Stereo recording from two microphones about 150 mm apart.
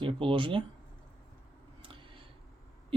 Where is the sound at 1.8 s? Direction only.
35° right (ahead or behind).